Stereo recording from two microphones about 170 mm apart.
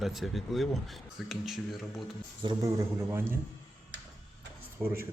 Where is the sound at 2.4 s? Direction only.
20° right (ahead or behind).